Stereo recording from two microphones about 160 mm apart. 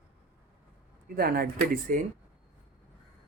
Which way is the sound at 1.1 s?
70° right (ahead or behind).